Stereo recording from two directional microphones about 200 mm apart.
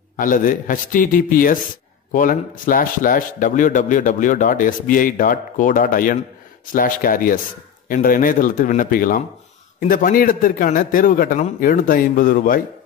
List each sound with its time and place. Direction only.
0.2 s a man's voice: 40° left (ahead or behind)